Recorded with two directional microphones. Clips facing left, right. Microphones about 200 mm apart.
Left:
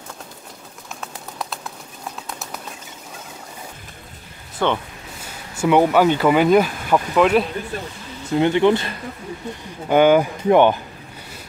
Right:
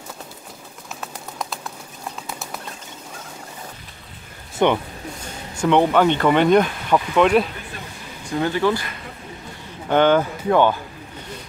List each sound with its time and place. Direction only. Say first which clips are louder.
1.0 s bird: even; centre (ahead or behind)
4.6 s speech: right 3 dB; 20° right (ahead or behind)
5.2 s speech: left 1 dB; 5° left (ahead or behind)
8.3 s speech: left 4 dB; 20° left (ahead or behind)
9.8 s speech: left 2 dB; 10° left (ahead or behind)